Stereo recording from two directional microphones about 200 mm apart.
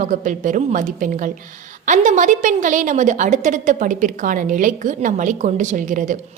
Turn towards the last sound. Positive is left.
turn(degrees=-40)  # may be behind; listen again after turning